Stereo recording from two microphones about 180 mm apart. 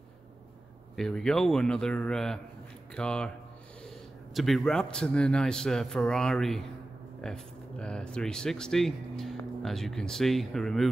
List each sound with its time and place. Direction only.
0.9 s a man's voice: 5° left (ahead or behind)